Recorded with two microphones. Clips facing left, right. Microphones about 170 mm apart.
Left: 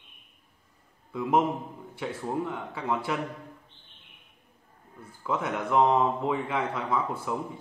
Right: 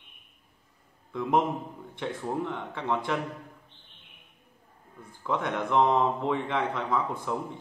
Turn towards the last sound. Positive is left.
turn(degrees=5)  # may be behind; listen again after turning